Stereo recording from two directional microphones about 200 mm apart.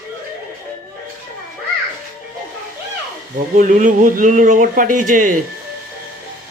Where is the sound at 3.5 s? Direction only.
40° right (ahead or behind).